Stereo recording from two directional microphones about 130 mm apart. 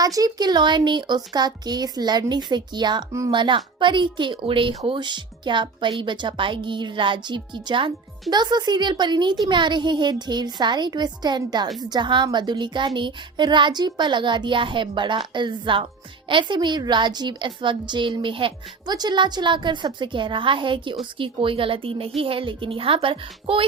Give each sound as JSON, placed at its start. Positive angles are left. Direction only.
{"t": 0.0, "sound": "a woman's voice", "side_deg": -30}
{"t": 3.3, "sound": "a woman's voice", "side_deg": -40}